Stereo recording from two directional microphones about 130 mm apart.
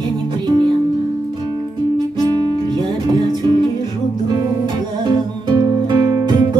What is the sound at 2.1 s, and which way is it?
Music, 30° right (ahead or behind).